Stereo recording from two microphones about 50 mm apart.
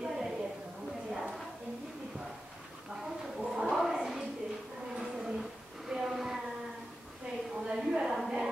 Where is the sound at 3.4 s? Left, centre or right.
Centre.